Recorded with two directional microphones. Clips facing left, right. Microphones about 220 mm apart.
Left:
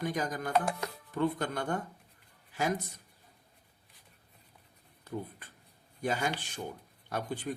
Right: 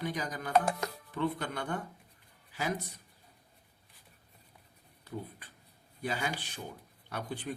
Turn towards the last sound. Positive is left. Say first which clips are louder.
# left 3 dB
turn(degrees=45)  # may be behind; listen again after turning